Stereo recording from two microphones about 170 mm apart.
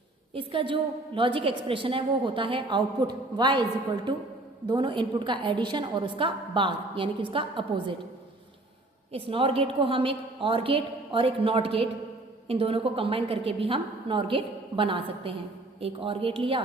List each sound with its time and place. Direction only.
0.3 s a woman's voice: 30° right (ahead or behind)
4.7 s a woman's voice: 30° right (ahead or behind)
9.1 s a woman's voice: 30° right (ahead or behind)